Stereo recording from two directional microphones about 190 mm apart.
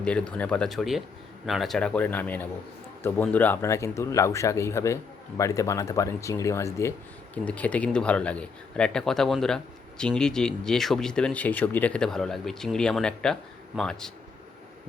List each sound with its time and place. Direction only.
0.0 s speech: 5° left (ahead or behind)